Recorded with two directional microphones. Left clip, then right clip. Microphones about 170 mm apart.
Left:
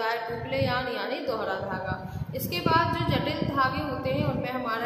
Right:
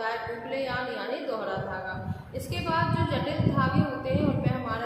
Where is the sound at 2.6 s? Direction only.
30° left (ahead or behind).